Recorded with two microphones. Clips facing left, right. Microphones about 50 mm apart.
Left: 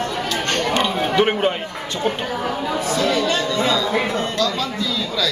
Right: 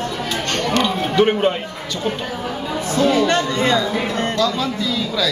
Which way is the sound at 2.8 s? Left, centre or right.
Right.